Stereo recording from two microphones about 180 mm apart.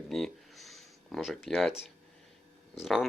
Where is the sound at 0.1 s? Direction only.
Centre (ahead or behind).